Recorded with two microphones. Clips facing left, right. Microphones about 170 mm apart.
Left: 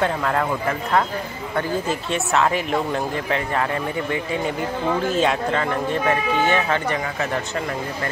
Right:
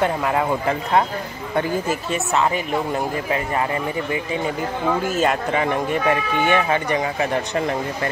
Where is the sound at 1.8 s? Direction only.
5° right (ahead or behind).